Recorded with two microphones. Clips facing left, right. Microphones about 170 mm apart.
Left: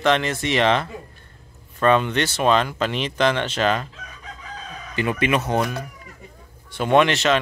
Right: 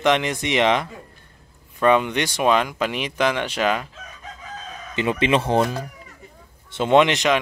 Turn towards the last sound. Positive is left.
turn(degrees=-15)  # may be behind; listen again after turning